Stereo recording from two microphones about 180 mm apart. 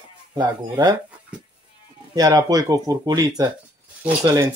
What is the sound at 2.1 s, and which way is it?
Speech, 20° right (ahead or behind).